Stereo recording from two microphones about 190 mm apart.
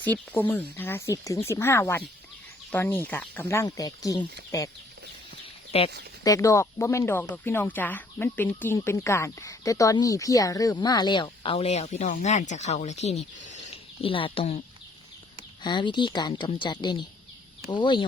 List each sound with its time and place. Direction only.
0.0 s speech: 10° left (ahead or behind)
5.7 s speech: 30° left (ahead or behind)
6.2 s speech: 15° left (ahead or behind); by 14.6 s 30° left (ahead or behind)
15.6 s speech: 25° left (ahead or behind)